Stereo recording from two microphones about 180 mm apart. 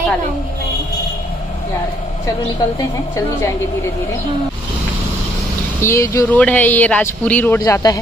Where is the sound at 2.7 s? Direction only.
15° left (ahead or behind).